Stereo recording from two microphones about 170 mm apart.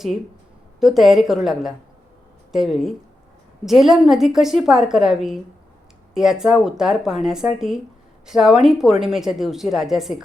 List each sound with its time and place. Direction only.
0.8 s a woman's voice: centre (ahead or behind)